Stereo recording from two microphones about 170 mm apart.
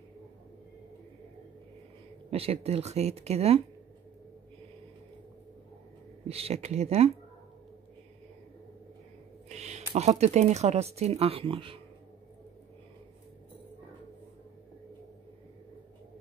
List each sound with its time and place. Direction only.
2.3 s speech: 35° right (ahead or behind)
6.2 s speech: 35° right (ahead or behind)
9.5 s speech: 40° right (ahead or behind)